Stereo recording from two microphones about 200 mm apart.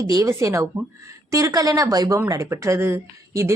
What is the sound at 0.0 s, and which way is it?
Speech, 15° right (ahead or behind).